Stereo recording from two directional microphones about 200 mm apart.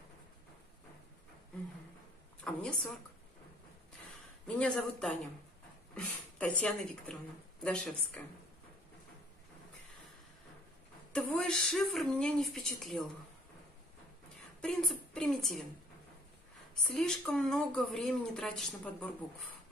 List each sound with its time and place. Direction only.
2.4 s speech: 5° left (ahead or behind)
4.6 s speech: 5° left (ahead or behind)
11.1 s speech: 5° left (ahead or behind)
14.6 s speech: centre (ahead or behind)
16.8 s speech: centre (ahead or behind)